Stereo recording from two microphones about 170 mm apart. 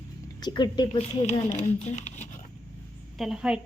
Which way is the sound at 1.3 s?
40° left (ahead or behind).